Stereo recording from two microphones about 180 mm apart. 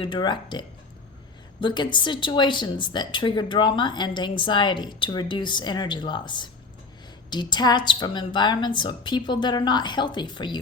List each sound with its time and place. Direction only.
0.0 s a woman's voice: 25° left (ahead or behind)
1.6 s a woman's voice: 25° left (ahead or behind)